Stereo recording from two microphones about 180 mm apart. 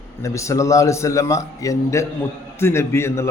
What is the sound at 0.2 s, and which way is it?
Speech, 15° left (ahead or behind).